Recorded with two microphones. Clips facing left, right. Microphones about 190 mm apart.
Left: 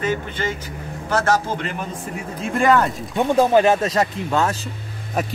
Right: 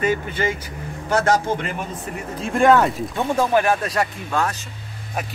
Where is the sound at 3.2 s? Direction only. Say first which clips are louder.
Left 4 dB; 20° left (ahead or behind).